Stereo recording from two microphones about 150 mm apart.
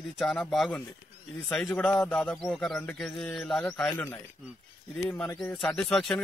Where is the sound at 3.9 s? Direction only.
15° left (ahead or behind).